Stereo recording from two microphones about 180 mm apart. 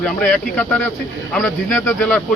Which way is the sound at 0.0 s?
5° left (ahead or behind).